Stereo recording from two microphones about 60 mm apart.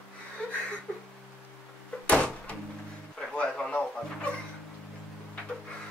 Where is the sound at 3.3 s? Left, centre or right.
Centre.